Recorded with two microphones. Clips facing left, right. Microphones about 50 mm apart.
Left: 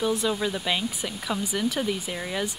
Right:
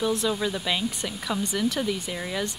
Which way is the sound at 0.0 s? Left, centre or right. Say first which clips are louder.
Even; centre.